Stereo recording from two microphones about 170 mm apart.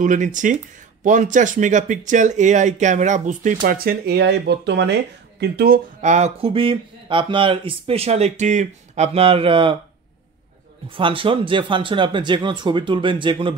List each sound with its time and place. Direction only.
0.0 s speech: 50° right (ahead or behind)
3.6 s speech: 60° right (ahead or behind); by 5.8 s 75° right (ahead or behind)
5.9 s speech: 40° right (ahead or behind)
10.9 s speech: 30° right (ahead or behind)